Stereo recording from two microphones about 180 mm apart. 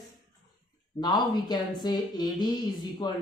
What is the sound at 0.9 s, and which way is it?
Speech, 25° left (ahead or behind).